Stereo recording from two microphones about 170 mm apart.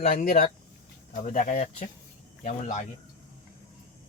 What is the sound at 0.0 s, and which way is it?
Speech, 45° left (ahead or behind).